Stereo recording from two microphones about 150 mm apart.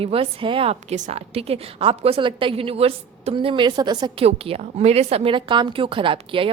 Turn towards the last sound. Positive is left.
turn(degrees=-35)  # may be behind; listen again after turning